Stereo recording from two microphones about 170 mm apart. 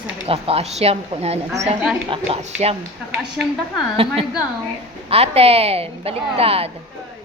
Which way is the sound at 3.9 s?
35° right (ahead or behind).